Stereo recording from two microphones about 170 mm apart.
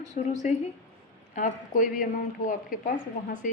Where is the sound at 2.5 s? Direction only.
55° left (ahead or behind).